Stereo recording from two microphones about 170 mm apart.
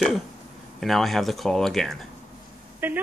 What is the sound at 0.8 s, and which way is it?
Speech, centre (ahead or behind).